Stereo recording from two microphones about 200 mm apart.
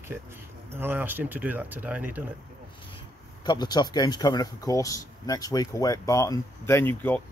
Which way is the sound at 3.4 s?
20° left (ahead or behind).